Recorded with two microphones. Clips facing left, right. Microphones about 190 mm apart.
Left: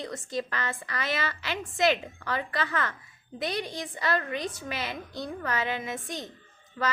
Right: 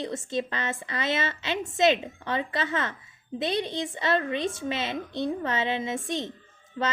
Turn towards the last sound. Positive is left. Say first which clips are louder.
# right 1 dB
turn(degrees=-25)  # may be behind; listen again after turning